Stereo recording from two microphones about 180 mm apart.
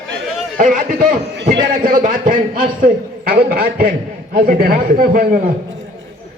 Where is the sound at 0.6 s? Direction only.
50° right (ahead or behind).